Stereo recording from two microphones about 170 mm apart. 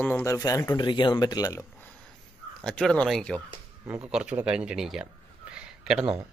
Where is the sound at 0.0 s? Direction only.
15° left (ahead or behind).